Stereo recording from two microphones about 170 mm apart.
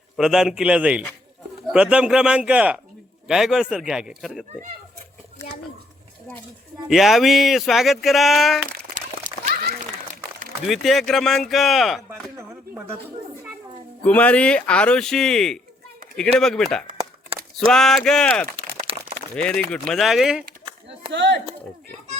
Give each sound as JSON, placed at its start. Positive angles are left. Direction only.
{"t": 0.2, "sound": "speech", "side_deg": -5}
{"t": 6.8, "sound": "speech", "side_deg": 0}
{"t": 9.5, "sound": "a sound", "side_deg": -65}
{"t": 10.7, "sound": "speech", "side_deg": 0}
{"t": 14.0, "sound": "speech", "side_deg": 10}
{"t": 18.9, "sound": "a sound", "side_deg": -35}
{"t": 19.5, "sound": "speech", "side_deg": 5}
{"t": 21.1, "sound": "speech", "side_deg": -90}